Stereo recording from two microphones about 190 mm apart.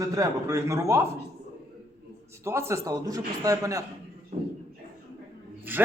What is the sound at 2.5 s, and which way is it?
A man's voice, 15° right (ahead or behind).